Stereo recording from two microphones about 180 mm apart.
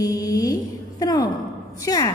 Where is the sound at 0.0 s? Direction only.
20° left (ahead or behind).